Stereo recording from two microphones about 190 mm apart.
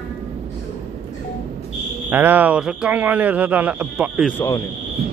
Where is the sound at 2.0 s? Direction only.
10° right (ahead or behind).